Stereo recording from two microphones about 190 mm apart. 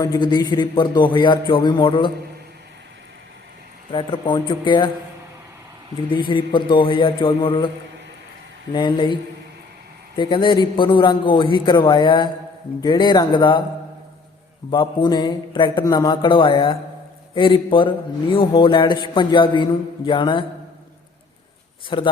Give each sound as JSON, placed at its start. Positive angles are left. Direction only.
{"t": 0.0, "sound": "a man's voice", "side_deg": 20}
{"t": 3.9, "sound": "a man's voice", "side_deg": 25}
{"t": 6.1, "sound": "a man's voice", "side_deg": 25}
{"t": 8.7, "sound": "a man's voice", "side_deg": 25}
{"t": 10.2, "sound": "a man's voice", "side_deg": 25}
{"t": 14.7, "sound": "a man's voice", "side_deg": 25}
{"t": 21.8, "sound": "a man's voice", "side_deg": 25}